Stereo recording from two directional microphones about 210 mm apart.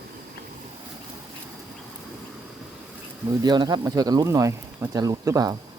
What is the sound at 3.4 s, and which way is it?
Speech, 20° right (ahead or behind).